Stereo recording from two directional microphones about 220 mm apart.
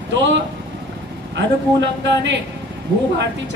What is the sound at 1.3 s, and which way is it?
A man's voice, 55° right (ahead or behind).